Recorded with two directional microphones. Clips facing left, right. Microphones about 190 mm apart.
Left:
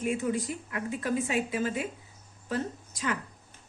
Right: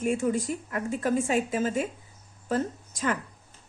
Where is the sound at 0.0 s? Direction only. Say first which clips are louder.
Right 3 dB; 45° right (ahead or behind).